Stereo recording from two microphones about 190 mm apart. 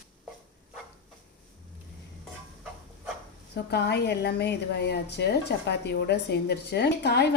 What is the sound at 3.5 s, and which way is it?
A woman's voice, 60° left (ahead or behind).